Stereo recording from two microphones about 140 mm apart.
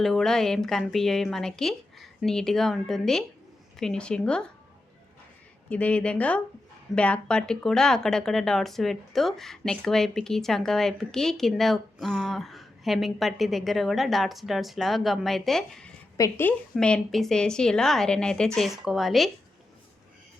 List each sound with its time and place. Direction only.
0.0 s speech: centre (ahead or behind)
5.6 s speech: 10° left (ahead or behind)
16.1 s a woman's voice: 25° left (ahead or behind)
16.7 s speech: 5° left (ahead or behind)